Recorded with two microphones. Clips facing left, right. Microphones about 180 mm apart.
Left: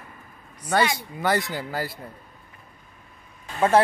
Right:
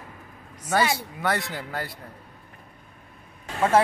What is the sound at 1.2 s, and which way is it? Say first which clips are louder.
Speech: left 5 dB; centre (ahead or behind).